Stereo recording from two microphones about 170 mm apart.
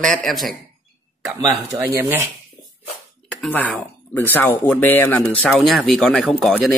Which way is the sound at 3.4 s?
5° left (ahead or behind).